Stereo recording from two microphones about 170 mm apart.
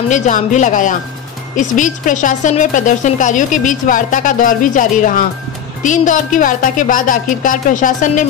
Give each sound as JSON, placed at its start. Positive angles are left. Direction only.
{"t": 0.1, "sound": "a woman's voice", "side_deg": 45}